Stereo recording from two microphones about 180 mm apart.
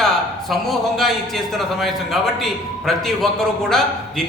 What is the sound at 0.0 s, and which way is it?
A man's voice, centre (ahead or behind).